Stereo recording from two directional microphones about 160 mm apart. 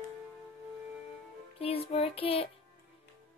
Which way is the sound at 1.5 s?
40° left (ahead or behind).